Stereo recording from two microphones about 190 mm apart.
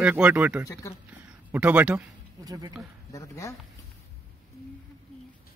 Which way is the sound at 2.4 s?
20° right (ahead or behind).